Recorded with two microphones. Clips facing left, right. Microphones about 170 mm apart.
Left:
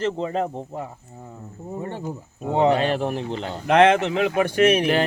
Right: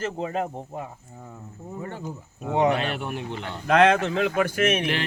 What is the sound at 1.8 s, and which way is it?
A man's voice, 30° left (ahead or behind).